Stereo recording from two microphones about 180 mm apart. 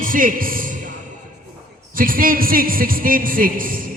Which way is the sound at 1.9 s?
50° right (ahead or behind).